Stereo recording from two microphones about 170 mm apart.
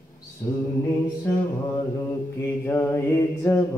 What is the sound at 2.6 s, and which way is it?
Mantra, 15° left (ahead or behind).